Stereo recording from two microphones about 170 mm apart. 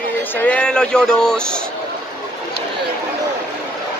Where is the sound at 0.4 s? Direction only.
5° left (ahead or behind).